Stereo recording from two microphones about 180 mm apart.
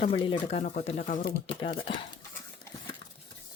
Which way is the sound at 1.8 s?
30° left (ahead or behind).